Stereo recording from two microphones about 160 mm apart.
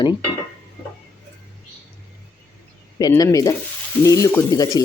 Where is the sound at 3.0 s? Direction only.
20° left (ahead or behind).